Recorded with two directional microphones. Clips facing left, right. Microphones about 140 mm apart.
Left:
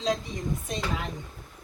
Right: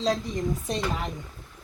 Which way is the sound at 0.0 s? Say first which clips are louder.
Right 3 dB; 45° right (ahead or behind).